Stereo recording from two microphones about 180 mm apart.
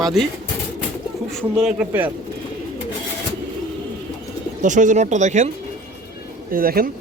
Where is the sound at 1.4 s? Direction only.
Centre (ahead or behind).